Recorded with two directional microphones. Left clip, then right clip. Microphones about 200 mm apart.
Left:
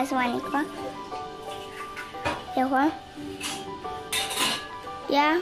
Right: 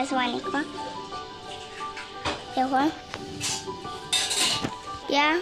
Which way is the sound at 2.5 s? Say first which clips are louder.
Even; 5° left (ahead or behind).